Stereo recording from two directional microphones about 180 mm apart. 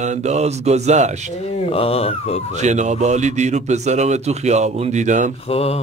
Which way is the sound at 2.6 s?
40° right (ahead or behind).